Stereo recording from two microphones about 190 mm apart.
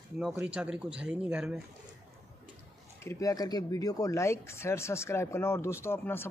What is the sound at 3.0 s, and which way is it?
Speech, 15° left (ahead or behind).